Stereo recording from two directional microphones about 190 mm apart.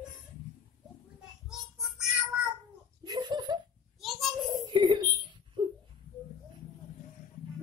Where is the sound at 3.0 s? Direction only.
20° right (ahead or behind).